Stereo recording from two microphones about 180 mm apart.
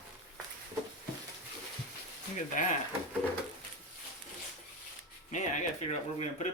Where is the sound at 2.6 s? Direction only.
45° left (ahead or behind).